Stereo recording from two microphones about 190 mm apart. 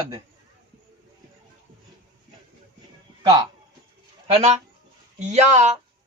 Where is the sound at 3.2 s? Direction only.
20° right (ahead or behind).